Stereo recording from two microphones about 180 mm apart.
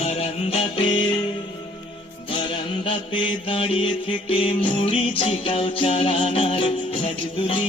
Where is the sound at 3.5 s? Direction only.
30° left (ahead or behind).